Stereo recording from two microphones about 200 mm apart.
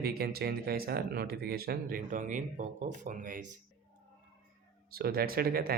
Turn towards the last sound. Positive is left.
turn(degrees=-50)  # may be behind; listen again after turning